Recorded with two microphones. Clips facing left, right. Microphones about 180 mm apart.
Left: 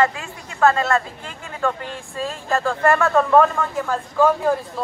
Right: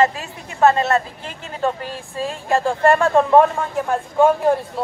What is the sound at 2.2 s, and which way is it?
Speech, 25° right (ahead or behind).